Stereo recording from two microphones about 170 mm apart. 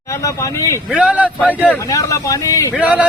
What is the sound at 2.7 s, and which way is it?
Speech, 10° right (ahead or behind).